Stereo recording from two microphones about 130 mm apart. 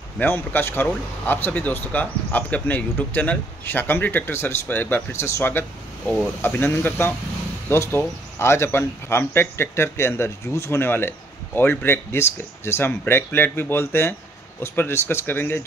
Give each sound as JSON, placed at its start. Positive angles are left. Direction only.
{"t": 0.2, "sound": "speech", "side_deg": 15}